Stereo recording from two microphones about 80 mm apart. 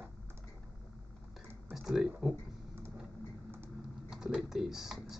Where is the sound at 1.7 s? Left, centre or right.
Centre.